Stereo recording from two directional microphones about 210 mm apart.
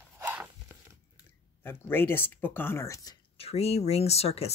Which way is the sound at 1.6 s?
10° left (ahead or behind).